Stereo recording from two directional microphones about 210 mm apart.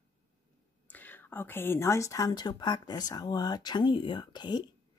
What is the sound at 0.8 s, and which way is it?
Speech, 10° left (ahead or behind).